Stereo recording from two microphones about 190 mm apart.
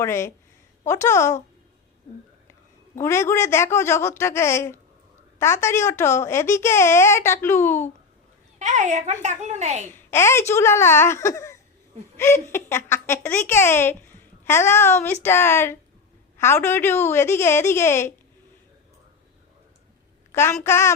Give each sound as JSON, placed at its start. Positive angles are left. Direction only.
{"t": 0.0, "sound": "a child's voice", "side_deg": 15}
{"t": 3.0, "sound": "a child's voice", "side_deg": 15}
{"t": 8.5, "sound": "a child's voice", "side_deg": -40}
{"t": 9.9, "sound": "a child's voice", "side_deg": 15}
{"t": 20.3, "sound": "a child's voice", "side_deg": 15}